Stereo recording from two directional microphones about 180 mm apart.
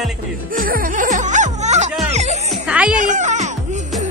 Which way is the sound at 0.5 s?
50° right (ahead or behind).